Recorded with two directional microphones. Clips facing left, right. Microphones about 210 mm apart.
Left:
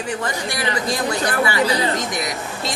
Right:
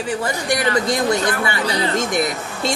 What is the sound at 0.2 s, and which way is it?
Speech, 15° right (ahead or behind).